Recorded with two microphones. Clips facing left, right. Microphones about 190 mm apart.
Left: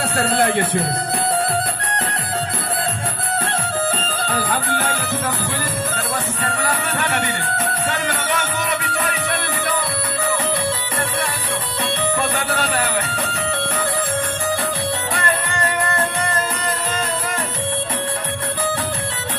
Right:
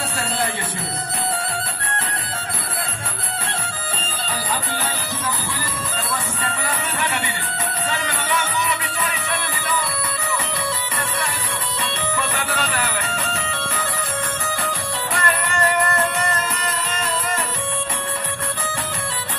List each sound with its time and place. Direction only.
0.3 s a man's voice: 60° left (ahead or behind)
4.3 s music: 55° left (ahead or behind)
6.4 s music: 60° left (ahead or behind)
9.7 s music: 60° left (ahead or behind)
12.0 s music: 60° left (ahead or behind)